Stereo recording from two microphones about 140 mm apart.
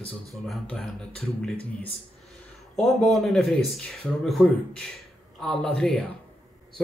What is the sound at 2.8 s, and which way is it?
Speech, centre (ahead or behind).